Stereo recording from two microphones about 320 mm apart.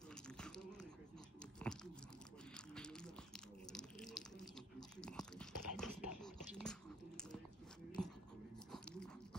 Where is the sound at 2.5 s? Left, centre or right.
Centre.